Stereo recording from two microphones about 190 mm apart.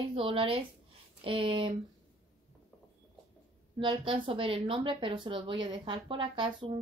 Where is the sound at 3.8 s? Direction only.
25° right (ahead or behind).